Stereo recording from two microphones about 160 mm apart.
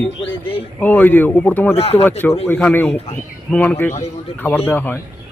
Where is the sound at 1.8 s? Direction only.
40° left (ahead or behind).